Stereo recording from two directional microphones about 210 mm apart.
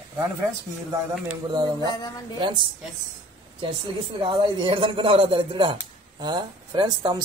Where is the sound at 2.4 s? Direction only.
20° right (ahead or behind).